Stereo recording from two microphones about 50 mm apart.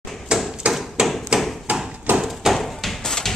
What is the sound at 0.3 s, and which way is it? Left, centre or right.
Door, centre.